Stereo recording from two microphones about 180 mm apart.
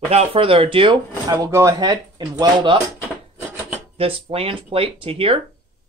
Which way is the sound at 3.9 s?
30° right (ahead or behind).